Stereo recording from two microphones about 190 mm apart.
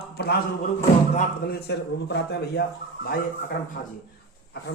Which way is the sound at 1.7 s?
65° left (ahead or behind).